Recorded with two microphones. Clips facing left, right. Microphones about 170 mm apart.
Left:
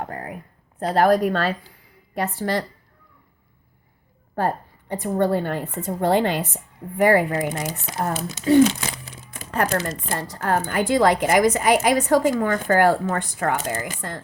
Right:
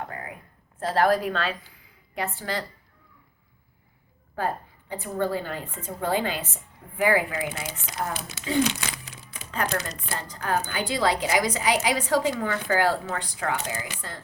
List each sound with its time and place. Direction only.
0.0 s a sound: 35° left (ahead or behind)
0.8 s a woman's voice: 40° left (ahead or behind)
4.9 s a woman's voice: 60° left (ahead or behind)
6.9 s a woman's voice: 45° left (ahead or behind)